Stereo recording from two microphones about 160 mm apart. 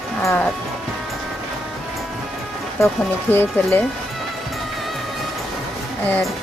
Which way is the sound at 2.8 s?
15° left (ahead or behind).